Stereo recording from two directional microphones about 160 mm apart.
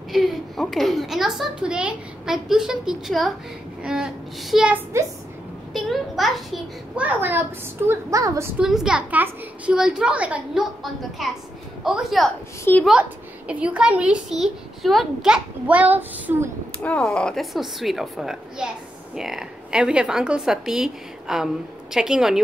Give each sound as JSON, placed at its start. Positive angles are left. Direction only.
{"t": 0.1, "sound": "a woman's voice", "side_deg": 0}
{"t": 4.9, "sound": "a woman's voice", "side_deg": -20}
{"t": 5.7, "sound": "a woman's voice", "side_deg": 0}
{"t": 8.5, "sound": "a woman's voice", "side_deg": -5}
{"t": 12.7, "sound": "a woman's voice", "side_deg": 15}
{"t": 13.5, "sound": "a woman's voice", "side_deg": -5}
{"t": 16.8, "sound": "a woman's voice", "side_deg": 5}